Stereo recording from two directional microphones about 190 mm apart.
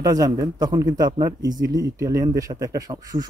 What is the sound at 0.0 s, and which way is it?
A man's voice, 20° right (ahead or behind).